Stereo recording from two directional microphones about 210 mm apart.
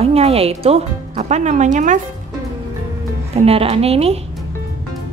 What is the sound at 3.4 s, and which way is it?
Speech, 30° right (ahead or behind).